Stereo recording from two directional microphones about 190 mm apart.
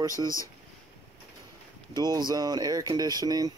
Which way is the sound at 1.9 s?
20° right (ahead or behind).